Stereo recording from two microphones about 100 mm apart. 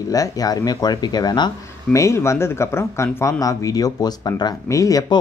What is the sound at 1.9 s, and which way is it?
Speech, 30° left (ahead or behind).